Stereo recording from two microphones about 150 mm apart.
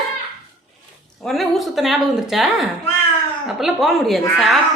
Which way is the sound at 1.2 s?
Centre (ahead or behind).